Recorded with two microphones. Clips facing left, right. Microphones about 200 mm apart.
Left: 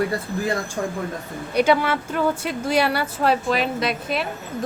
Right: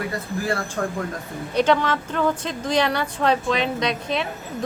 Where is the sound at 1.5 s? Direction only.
10° left (ahead or behind).